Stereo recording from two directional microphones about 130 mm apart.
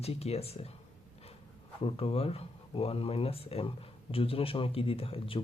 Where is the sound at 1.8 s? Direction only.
45° left (ahead or behind).